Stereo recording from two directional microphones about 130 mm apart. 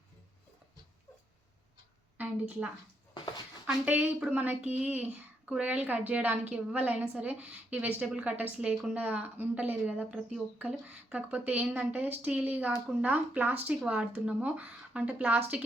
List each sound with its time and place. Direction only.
2.1 s a woman's voice: 10° right (ahead or behind)
3.7 s a woman's voice: 10° right (ahead or behind)